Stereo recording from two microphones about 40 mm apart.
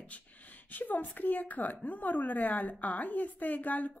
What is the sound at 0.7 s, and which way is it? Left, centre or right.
A woman's voice, left.